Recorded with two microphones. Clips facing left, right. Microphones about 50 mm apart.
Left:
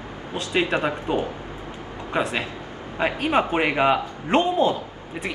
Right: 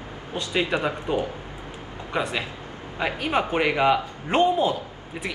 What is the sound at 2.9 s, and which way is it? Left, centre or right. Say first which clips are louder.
A woman's voice: left 3 dB; left.